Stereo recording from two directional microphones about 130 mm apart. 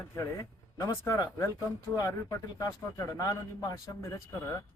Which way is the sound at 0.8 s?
25° left (ahead or behind).